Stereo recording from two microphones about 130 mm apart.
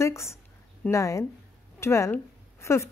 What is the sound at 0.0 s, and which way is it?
A woman's voice, 20° left (ahead or behind).